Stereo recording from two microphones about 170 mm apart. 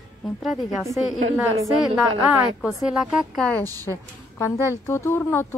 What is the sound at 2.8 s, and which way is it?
Speech, 5° right (ahead or behind).